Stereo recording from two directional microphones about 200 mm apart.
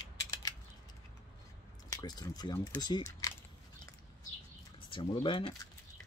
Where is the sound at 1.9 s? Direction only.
20° left (ahead or behind).